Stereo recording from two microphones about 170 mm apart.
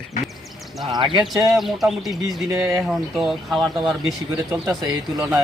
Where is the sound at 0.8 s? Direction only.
30° right (ahead or behind).